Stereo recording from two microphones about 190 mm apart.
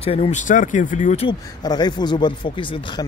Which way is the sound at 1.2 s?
20° left (ahead or behind).